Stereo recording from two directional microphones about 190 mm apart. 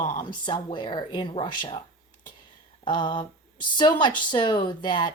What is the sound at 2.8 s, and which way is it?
Speech, 25° left (ahead or behind).